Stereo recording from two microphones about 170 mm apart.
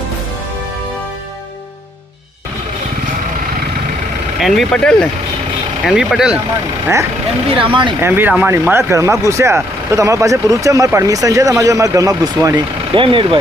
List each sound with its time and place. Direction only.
4.4 s speech: centre (ahead or behind)
7.6 s speech: 30° right (ahead or behind)
8.0 s speech: 10° right (ahead or behind); by 13.4 s 30° right (ahead or behind)